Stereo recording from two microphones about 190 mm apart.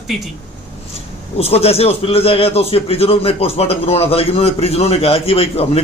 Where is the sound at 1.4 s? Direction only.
30° left (ahead or behind).